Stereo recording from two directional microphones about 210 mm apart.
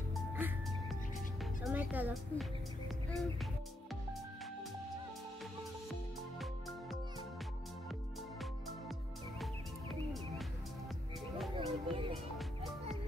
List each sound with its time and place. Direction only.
0.1 s music: centre (ahead or behind)
11.5 s music: 25° right (ahead or behind)